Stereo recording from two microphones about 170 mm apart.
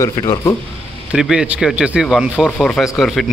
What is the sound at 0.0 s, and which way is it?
Speech, 20° left (ahead or behind).